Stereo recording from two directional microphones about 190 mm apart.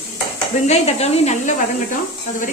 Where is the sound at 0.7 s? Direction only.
35° left (ahead or behind).